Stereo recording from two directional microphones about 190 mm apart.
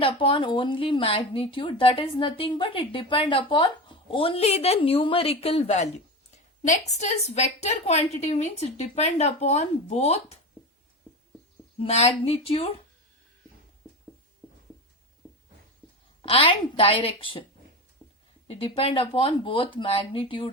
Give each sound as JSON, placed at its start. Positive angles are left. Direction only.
{"t": 0.0, "sound": "a woman's voice", "side_deg": 30}
{"t": 11.8, "sound": "a woman's voice", "side_deg": 30}
{"t": 15.2, "sound": "a sound", "side_deg": -5}
{"t": 16.2, "sound": "a woman's voice", "side_deg": 30}
{"t": 18.4, "sound": "a woman's voice", "side_deg": 30}